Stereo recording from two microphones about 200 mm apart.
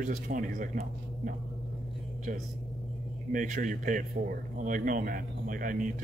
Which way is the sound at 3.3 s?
40° right (ahead or behind).